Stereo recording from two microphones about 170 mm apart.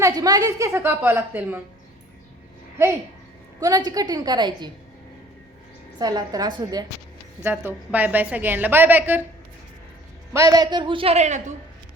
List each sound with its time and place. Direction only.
0.0 s a woman's voice: 20° right (ahead or behind)
3.6 s a man's voice: 20° right (ahead or behind)
6.0 s a man's voice: 20° right (ahead or behind)
7.4 s a woman's voice: 10° right (ahead or behind)
10.3 s a man's voice: 20° right (ahead or behind); by 11.5 s 45° right (ahead or behind)